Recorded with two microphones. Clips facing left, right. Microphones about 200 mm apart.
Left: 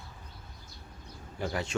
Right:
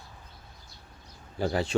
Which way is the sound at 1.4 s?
30° right (ahead or behind).